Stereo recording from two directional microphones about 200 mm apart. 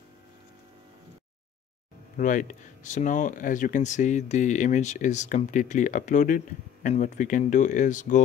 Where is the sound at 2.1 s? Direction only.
40° left (ahead or behind).